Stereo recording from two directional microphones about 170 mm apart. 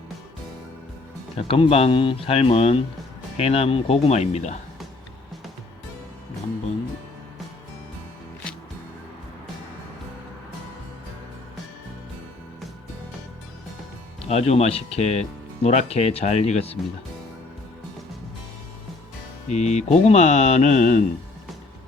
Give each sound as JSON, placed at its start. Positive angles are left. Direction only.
{"t": 1.4, "sound": "speech", "side_deg": 35}
{"t": 14.2, "sound": "speech", "side_deg": 40}
{"t": 19.5, "sound": "speech", "side_deg": 40}